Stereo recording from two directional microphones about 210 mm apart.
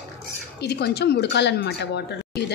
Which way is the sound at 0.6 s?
50° left (ahead or behind).